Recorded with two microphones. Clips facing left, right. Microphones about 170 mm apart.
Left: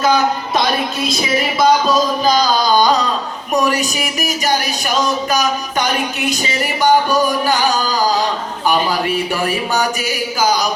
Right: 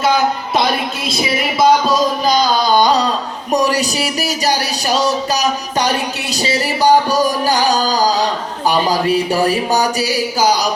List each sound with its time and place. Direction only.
1.0 s speech: 25° right (ahead or behind)
3.5 s speech: 35° right (ahead or behind)